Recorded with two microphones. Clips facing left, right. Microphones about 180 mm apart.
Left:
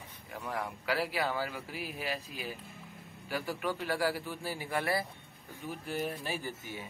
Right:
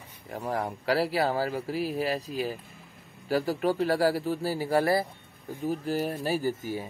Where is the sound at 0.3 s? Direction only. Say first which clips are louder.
Right 7 dB; 40° right (ahead or behind).